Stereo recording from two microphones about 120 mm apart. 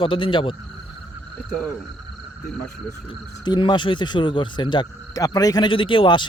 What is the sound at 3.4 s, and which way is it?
A man's voice, 35° left (ahead or behind).